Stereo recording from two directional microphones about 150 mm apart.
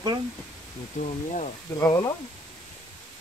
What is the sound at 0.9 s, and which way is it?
Speech, 55° left (ahead or behind).